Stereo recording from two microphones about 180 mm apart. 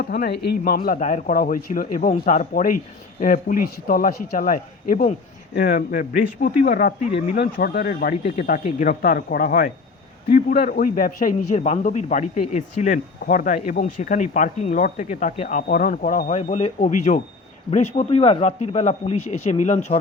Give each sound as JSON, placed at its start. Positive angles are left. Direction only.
{"t": 0.0, "sound": "a man's voice", "side_deg": 60}
{"t": 8.2, "sound": "a man's voice", "side_deg": 35}
{"t": 8.5, "sound": "a man's voice", "side_deg": 50}